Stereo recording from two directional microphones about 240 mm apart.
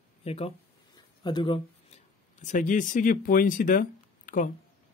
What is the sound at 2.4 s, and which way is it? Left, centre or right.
Speech, left.